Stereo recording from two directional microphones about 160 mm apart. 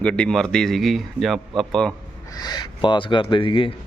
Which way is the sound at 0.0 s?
5° left (ahead or behind).